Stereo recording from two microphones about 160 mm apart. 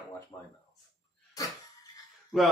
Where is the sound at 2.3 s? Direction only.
Centre (ahead or behind).